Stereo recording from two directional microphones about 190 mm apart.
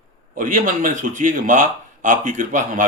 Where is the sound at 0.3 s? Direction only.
45° right (ahead or behind).